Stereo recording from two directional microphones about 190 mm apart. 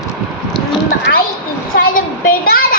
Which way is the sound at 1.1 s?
60° left (ahead or behind).